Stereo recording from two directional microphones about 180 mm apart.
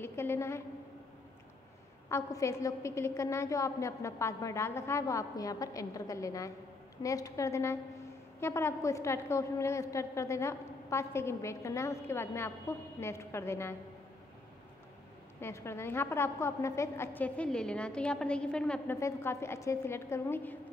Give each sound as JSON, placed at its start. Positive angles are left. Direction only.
{"t": 0.0, "sound": "a woman's voice", "side_deg": 15}
{"t": 2.0, "sound": "a woman's voice", "side_deg": 15}
{"t": 15.4, "sound": "a woman's voice", "side_deg": 15}